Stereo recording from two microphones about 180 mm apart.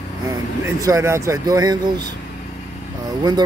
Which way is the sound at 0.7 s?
20° right (ahead or behind).